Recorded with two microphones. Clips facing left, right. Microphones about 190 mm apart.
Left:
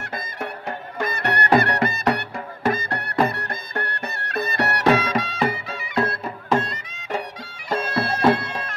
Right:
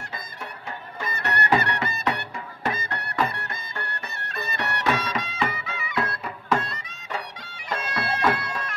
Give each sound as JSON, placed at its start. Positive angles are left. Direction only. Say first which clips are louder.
{"t": 0.9, "sound": "music", "louder": "left 6 dB", "side_deg": 65}
{"t": 1.3, "sound": "music", "louder": "left 4 dB", "side_deg": 45}
{"t": 4.6, "sound": "music", "louder": "left 6 dB", "side_deg": 75}
{"t": 5.0, "sound": "music", "louder": "left 6 dB", "side_deg": 60}
{"t": 5.4, "sound": "music", "louder": "left 5 dB", "side_deg": 35}
{"t": 7.7, "sound": "bagpipes", "louder": "left 5 dB", "side_deg": 30}